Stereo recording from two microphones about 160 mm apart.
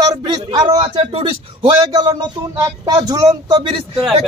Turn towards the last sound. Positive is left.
turn(degrees=-30)  # may be behind; listen again after turning